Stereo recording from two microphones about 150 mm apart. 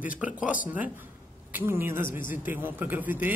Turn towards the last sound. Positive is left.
turn(degrees=-15)  # may be behind; listen again after turning